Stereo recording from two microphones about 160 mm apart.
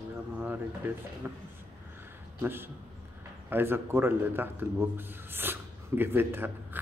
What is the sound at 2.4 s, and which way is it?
A man's voice, 15° right (ahead or behind).